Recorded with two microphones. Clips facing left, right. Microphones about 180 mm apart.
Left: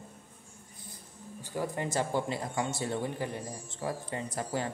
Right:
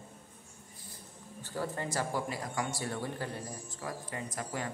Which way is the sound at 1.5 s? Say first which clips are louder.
Left 3 dB; 15° left (ahead or behind).